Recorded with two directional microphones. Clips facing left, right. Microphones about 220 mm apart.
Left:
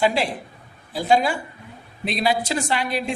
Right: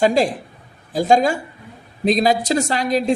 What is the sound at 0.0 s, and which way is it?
A woman's voice, 45° right (ahead or behind).